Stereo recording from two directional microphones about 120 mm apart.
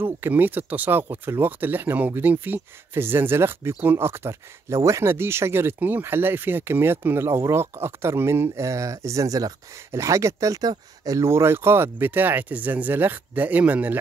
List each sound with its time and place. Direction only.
0.0 s speech: 15° right (ahead or behind)